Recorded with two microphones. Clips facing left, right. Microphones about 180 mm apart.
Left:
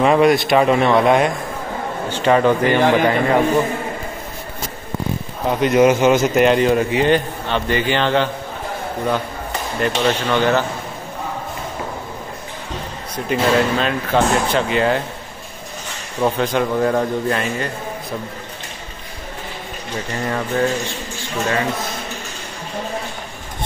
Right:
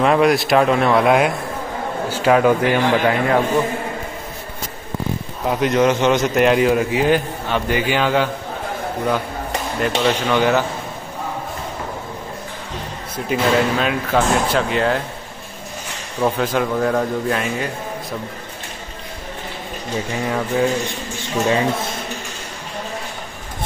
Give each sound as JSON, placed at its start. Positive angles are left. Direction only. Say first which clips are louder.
{"t": 0.0, "sound": "a man's voice", "louder": "left 1 dB", "side_deg": 0}
{"t": 5.5, "sound": "a man's voice", "louder": "left 3 dB", "side_deg": 0}
{"t": 9.8, "sound": "speech", "louder": "even", "side_deg": -5}
{"t": 13.1, "sound": "a man's voice", "louder": "left 1 dB", "side_deg": -5}
{"t": 16.2, "sound": "a man's voice", "louder": "left 1 dB", "side_deg": 0}
{"t": 20.2, "sound": "a man's voice", "louder": "even", "side_deg": -5}
{"t": 21.2, "sound": "speech", "louder": "right 3 dB", "side_deg": -20}